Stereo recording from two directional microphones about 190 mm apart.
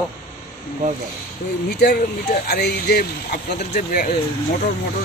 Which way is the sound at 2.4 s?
60° left (ahead or behind).